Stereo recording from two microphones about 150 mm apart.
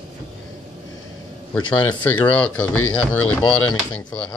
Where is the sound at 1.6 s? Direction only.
30° left (ahead or behind).